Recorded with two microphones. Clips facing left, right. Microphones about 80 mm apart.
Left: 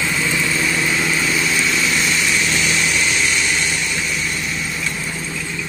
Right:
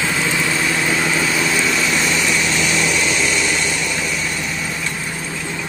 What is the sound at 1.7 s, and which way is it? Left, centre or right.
Vehicle, right.